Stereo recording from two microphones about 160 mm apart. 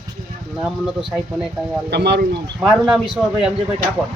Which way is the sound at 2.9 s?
5° right (ahead or behind).